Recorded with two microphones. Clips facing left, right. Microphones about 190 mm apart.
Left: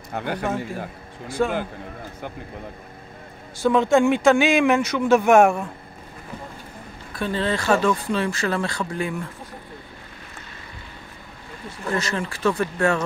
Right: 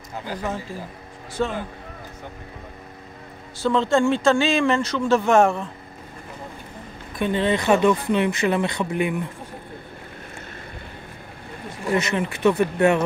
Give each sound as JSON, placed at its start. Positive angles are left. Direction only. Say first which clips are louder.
{"t": 0.1, "sound": "a man's voice", "louder": "left 4 dB", "side_deg": 65}
{"t": 1.4, "sound": "speech", "louder": "left 2 dB", "side_deg": 5}
{"t": 3.6, "sound": "speech", "louder": "left 2 dB", "side_deg": 15}
{"t": 7.2, "sound": "speech", "louder": "right 3 dB", "side_deg": -20}
{"t": 11.8, "sound": "speech", "louder": "right 3 dB", "side_deg": -20}